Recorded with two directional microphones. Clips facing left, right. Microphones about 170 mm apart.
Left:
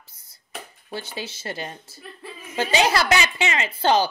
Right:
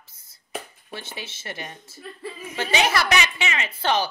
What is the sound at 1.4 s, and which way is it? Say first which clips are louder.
Speech: left 4 dB; 30° left (ahead or behind).